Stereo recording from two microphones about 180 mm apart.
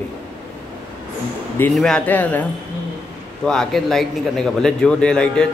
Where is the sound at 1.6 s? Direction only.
5° left (ahead or behind).